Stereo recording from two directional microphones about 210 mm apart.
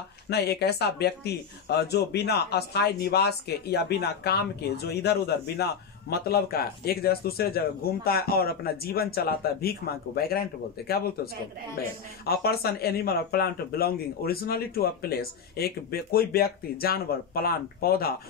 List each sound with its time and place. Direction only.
0.3 s speech: 50° left (ahead or behind)
12.3 s speech: 45° left (ahead or behind)